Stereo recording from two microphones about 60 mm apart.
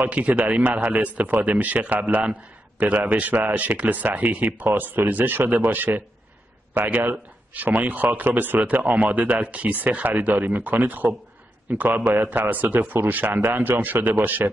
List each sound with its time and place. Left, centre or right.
0.0 s a man's voice: right